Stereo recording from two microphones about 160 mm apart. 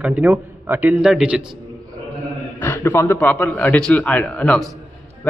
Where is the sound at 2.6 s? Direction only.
15° left (ahead or behind).